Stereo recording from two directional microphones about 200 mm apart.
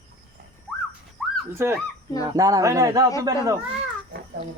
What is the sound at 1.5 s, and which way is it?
Speech, 10° right (ahead or behind).